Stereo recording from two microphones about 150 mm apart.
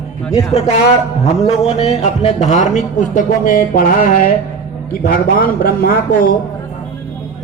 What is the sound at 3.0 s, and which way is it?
Speech, 60° left (ahead or behind).